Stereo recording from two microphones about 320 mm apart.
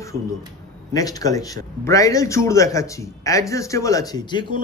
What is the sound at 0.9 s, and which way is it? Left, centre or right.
A man's voice, centre.